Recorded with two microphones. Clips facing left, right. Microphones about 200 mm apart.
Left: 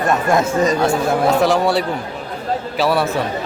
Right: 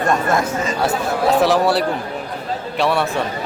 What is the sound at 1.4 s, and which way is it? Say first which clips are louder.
A man's voice: even; centre (ahead or behind).